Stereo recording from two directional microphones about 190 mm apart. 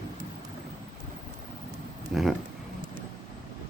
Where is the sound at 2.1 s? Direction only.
Centre (ahead or behind).